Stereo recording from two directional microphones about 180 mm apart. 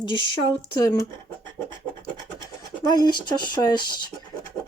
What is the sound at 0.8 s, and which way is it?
Speech, 20° left (ahead or behind).